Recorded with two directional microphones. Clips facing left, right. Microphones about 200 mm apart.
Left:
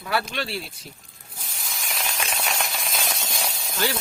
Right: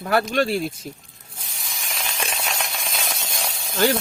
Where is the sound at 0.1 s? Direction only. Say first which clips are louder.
Right 7 dB; 45° right (ahead or behind).